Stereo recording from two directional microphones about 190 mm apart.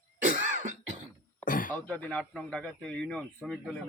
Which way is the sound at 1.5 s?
45° left (ahead or behind).